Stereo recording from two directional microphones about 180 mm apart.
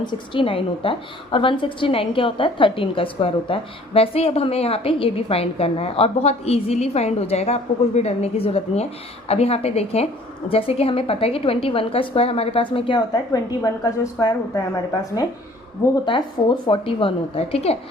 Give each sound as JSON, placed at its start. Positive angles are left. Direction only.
{"t": 0.0, "sound": "a woman's voice", "side_deg": 25}
{"t": 16.6, "sound": "a woman's voice", "side_deg": 30}